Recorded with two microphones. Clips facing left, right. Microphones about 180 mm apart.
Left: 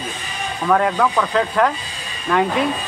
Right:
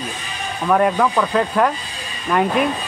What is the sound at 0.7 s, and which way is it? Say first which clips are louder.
Speech: right 1 dB; 10° right (ahead or behind).